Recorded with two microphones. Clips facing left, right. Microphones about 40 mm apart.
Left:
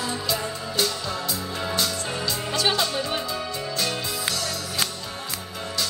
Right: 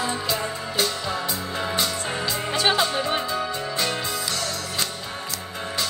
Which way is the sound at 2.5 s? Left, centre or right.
Centre.